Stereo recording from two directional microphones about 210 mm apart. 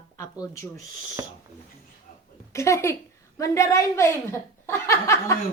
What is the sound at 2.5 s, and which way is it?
A woman's voice, 15° left (ahead or behind).